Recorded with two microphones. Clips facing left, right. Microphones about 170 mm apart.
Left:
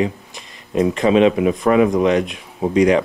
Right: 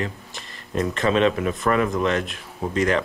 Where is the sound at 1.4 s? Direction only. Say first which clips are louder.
Left 8 dB; 65° left (ahead or behind).